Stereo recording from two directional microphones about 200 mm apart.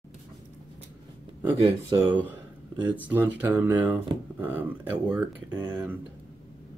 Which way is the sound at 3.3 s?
10° right (ahead or behind).